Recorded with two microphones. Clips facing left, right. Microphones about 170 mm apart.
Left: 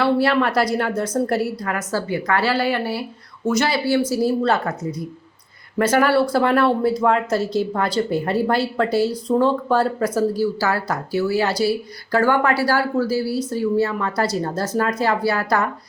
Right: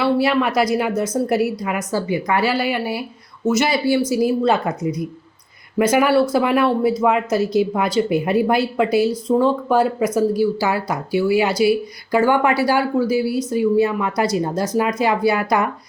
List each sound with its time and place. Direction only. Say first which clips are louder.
0.0 s speech: even; 10° right (ahead or behind)